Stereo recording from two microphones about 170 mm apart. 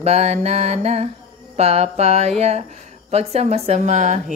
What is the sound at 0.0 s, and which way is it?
Speech, 40° right (ahead or behind).